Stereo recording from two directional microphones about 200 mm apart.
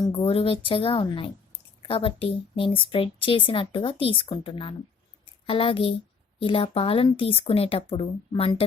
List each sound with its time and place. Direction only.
0.0 s a woman's voice: 30° left (ahead or behind)